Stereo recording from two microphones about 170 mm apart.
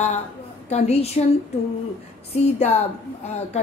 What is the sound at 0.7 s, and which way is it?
Speech, 40° left (ahead or behind).